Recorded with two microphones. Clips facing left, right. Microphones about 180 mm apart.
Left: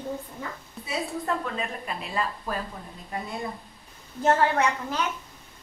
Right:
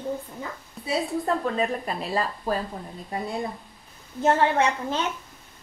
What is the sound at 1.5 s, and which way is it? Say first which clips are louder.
A woman's voice: right 6 dB; 35° right (ahead or behind).